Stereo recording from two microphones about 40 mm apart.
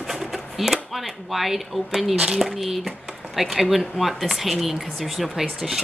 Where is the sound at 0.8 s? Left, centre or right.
Centre.